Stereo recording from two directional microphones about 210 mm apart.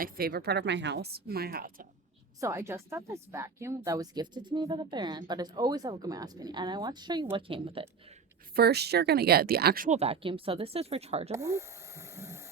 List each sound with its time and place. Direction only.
0.0 s a woman's voice: 45° right (ahead or behind)
2.4 s speech: 10° right (ahead or behind)
8.5 s speech: 50° right (ahead or behind); by 11.3 s 30° right (ahead or behind)
11.3 s a sound: 15° right (ahead or behind)